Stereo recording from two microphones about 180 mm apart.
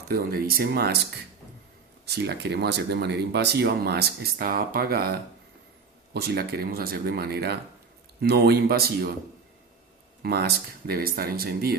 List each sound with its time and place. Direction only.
0.1 s speech: 55° right (ahead or behind)
2.0 s speech: 65° right (ahead or behind)
10.2 s speech: 65° right (ahead or behind)